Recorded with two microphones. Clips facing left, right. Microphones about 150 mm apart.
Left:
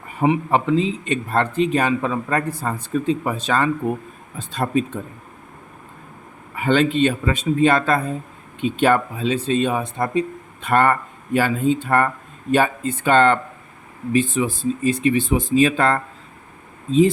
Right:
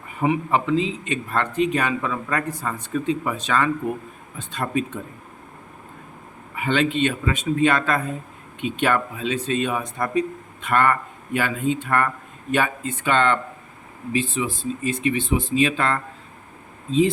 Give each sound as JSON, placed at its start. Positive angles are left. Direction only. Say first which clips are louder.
{"t": 0.2, "sound": "a man's voice", "louder": "left 3 dB", "side_deg": 30}
{"t": 6.6, "sound": "a man's voice", "louder": "left 4 dB", "side_deg": 40}